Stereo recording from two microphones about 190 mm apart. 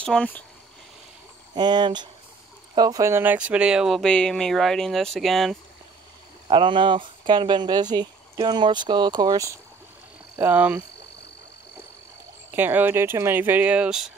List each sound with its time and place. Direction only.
0.0 s speech: 5° left (ahead or behind)
1.5 s speech: 25° right (ahead or behind); by 5.6 s centre (ahead or behind)
6.4 s speech: 25° right (ahead or behind); by 10.8 s 10° right (ahead or behind)
12.4 s speech: 10° right (ahead or behind)